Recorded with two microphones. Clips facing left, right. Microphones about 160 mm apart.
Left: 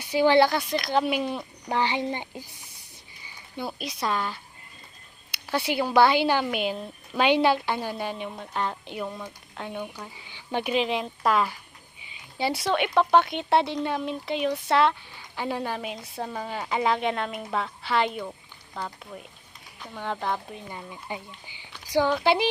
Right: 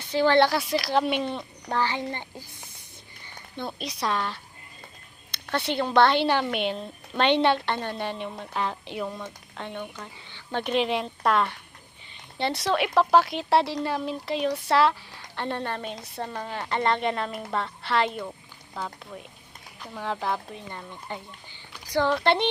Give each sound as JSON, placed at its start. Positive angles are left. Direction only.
{"t": 0.0, "sound": "speech", "side_deg": 10}
{"t": 0.4, "sound": "a woman's voice", "side_deg": 0}
{"t": 1.7, "sound": "a child's voice", "side_deg": 15}
{"t": 3.2, "sound": "a woman's voice", "side_deg": 5}
{"t": 22.0, "sound": "a woman's voice", "side_deg": 5}